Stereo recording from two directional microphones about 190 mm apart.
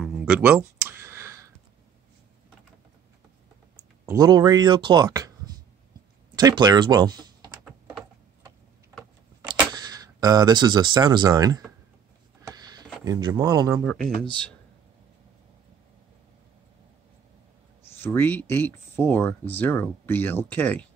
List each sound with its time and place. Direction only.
0.0 s a sound: 5° right (ahead or behind)
4.0 s speech: 15° right (ahead or behind)
7.6 s typing: 5° right (ahead or behind)
9.5 s speech: 20° right (ahead or behind)
12.4 s a sound: 20° right (ahead or behind)
17.9 s speech: 10° left (ahead or behind)